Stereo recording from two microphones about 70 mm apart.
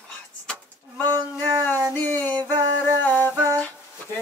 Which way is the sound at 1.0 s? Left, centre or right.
Right.